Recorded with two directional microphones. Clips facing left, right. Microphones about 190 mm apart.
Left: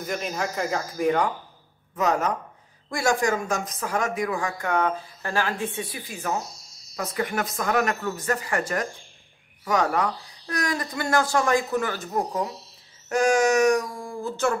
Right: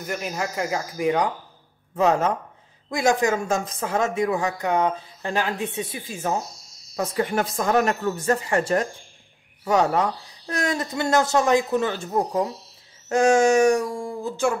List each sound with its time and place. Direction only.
0.0 s speech: 5° right (ahead or behind)
2.0 s speech: 25° right (ahead or behind)
14.3 s speech: 10° right (ahead or behind)